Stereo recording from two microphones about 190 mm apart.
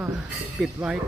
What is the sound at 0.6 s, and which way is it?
Speech, 5° right (ahead or behind).